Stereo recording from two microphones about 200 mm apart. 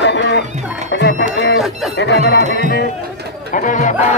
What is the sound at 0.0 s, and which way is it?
Music, 60° left (ahead or behind).